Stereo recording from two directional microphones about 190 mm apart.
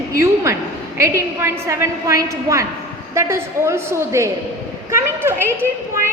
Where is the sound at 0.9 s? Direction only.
15° right (ahead or behind).